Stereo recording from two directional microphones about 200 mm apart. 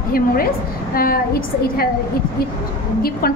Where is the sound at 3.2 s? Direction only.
50° left (ahead or behind).